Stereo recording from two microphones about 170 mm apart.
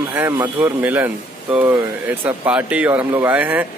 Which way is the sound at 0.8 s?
10° right (ahead or behind).